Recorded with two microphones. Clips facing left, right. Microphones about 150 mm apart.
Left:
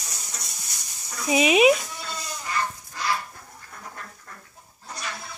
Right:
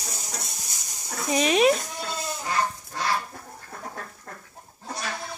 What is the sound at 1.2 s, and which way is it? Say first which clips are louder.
Speech: left 2 dB; 5° left (ahead or behind).